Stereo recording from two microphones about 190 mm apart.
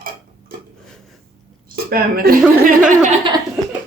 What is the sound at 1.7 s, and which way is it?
Speech, 50° right (ahead or behind).